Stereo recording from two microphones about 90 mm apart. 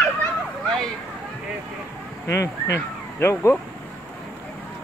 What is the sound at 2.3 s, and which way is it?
Speech, 30° left (ahead or behind).